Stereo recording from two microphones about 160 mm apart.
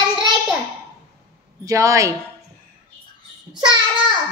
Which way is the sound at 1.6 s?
20° right (ahead or behind).